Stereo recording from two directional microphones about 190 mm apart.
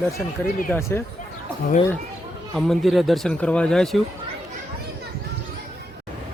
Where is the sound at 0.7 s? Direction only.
10° left (ahead or behind).